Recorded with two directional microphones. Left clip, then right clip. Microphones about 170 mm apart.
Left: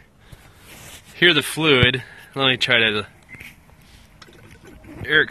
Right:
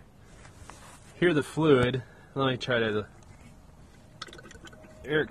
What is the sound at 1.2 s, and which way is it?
Speech, 15° left (ahead or behind).